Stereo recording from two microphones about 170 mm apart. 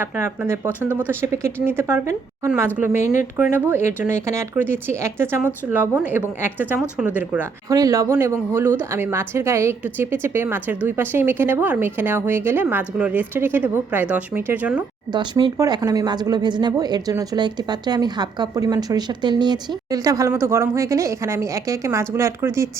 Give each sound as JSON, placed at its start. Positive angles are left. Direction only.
{"t": 0.0, "sound": "a woman's voice", "side_deg": -15}
{"t": 7.7, "sound": "a woman's voice", "side_deg": -20}
{"t": 15.1, "sound": "speech", "side_deg": -25}